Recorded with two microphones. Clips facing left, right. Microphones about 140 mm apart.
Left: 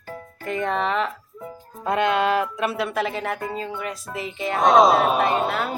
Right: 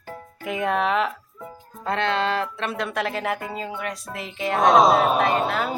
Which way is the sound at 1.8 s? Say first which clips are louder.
Left 3 dB; 15° left (ahead or behind).